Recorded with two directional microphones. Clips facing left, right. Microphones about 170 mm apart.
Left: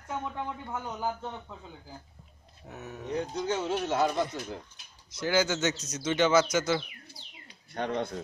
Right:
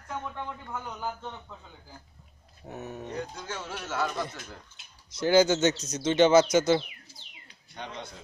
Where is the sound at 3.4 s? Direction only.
20° left (ahead or behind).